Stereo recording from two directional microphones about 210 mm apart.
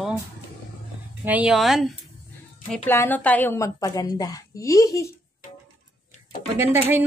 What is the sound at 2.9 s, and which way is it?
A woman's voice, 10° left (ahead or behind).